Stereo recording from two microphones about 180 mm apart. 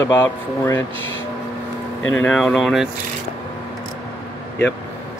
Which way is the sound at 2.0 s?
90° left.